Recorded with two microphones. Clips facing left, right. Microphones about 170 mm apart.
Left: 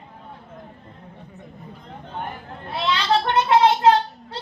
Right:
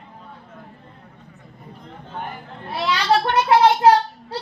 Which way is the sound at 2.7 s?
25° left (ahead or behind).